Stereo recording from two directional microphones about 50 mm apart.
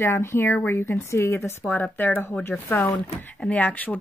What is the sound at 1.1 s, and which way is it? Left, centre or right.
Speech, left.